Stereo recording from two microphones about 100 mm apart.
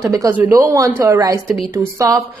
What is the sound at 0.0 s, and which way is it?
Speech, 30° right (ahead or behind).